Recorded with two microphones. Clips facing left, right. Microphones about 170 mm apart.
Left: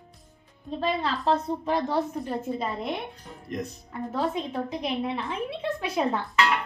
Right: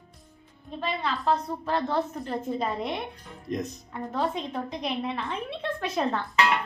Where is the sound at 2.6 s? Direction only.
Centre (ahead or behind).